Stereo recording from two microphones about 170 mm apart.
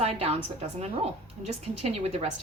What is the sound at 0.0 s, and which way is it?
Speech, 35° right (ahead or behind).